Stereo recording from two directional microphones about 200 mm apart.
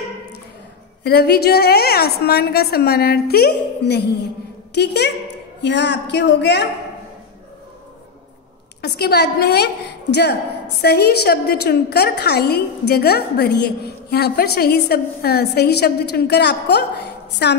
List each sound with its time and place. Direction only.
1.0 s a woman's voice: 55° left (ahead or behind)
8.8 s a woman's voice: 55° left (ahead or behind)